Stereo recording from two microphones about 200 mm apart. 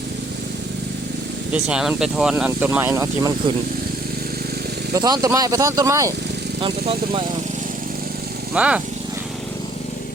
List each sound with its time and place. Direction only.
1.5 s speech: 5° right (ahead or behind)
4.9 s speech: 20° right (ahead or behind)
6.6 s speech: 25° right (ahead or behind)
8.5 s speech: 5° right (ahead or behind)